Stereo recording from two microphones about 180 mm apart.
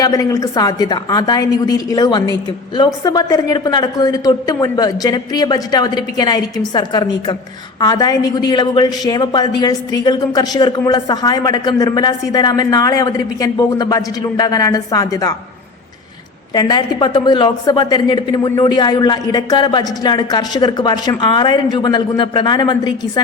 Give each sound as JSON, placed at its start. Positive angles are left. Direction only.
{"t": 0.0, "sound": "a woman's voice", "side_deg": 20}
{"t": 16.6, "sound": "a woman's voice", "side_deg": 20}